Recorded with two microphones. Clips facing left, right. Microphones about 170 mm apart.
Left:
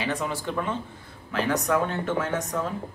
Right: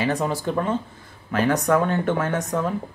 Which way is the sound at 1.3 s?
50° right (ahead or behind).